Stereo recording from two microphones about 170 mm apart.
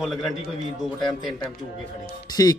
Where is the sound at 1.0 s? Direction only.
25° left (ahead or behind).